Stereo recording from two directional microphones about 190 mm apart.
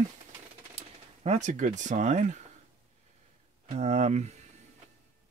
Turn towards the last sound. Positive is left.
turn(degrees=-35)  # may be behind; listen again after turning